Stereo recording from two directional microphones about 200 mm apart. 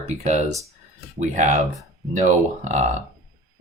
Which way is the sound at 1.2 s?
35° right (ahead or behind).